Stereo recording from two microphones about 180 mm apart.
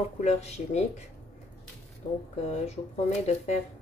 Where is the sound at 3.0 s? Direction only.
40° left (ahead or behind).